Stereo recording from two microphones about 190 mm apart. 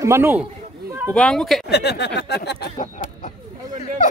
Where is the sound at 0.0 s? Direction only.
15° right (ahead or behind).